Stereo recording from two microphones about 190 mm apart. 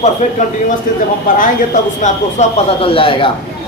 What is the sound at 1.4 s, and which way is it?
Speech, 40° left (ahead or behind).